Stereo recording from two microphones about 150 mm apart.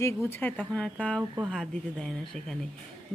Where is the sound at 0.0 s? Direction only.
15° left (ahead or behind).